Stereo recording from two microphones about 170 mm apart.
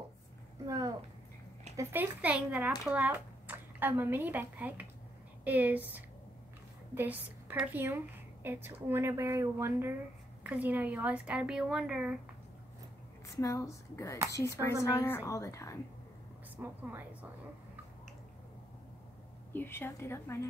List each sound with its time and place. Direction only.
0.7 s a sound: 20° right (ahead or behind)
1.8 s a woman's voice: 10° right (ahead or behind)
13.4 s a woman's voice: 20° left (ahead or behind)
16.6 s a woman's voice: 10° right (ahead or behind)
19.5 s a woman's voice: 15° left (ahead or behind)